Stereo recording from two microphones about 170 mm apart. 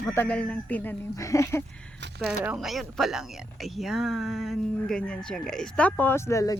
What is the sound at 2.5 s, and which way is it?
Speech, centre (ahead or behind).